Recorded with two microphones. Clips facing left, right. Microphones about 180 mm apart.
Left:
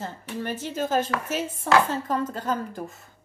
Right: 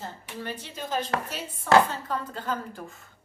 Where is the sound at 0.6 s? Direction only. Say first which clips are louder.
Left 8 dB; 45° left (ahead or behind).